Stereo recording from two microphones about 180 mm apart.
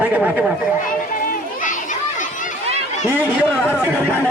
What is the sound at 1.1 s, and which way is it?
Children playing, 45° left (ahead or behind).